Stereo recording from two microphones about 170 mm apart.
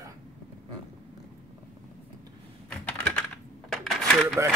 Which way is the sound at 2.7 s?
5° left (ahead or behind).